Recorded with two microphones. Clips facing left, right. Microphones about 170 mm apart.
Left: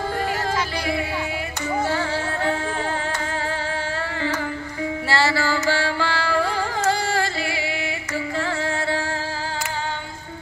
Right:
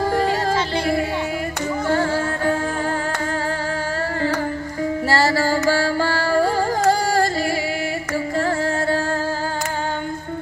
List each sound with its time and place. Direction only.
0.1 s music: 35° right (ahead or behind)
5.1 s music: 45° right (ahead or behind)